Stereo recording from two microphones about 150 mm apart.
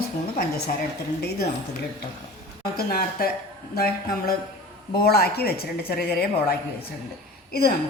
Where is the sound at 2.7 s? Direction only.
90° left.